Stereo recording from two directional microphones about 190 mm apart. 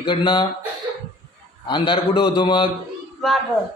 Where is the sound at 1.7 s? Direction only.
25° left (ahead or behind).